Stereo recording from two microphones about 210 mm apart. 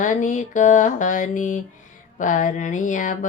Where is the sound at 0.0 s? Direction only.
35° left (ahead or behind).